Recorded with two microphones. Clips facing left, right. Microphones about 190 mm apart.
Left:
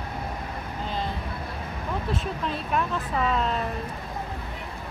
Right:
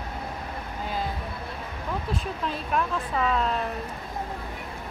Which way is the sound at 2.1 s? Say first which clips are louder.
Left 1 dB; centre (ahead or behind).